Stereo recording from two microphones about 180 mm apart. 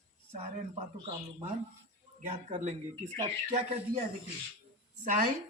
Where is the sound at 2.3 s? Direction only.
40° right (ahead or behind).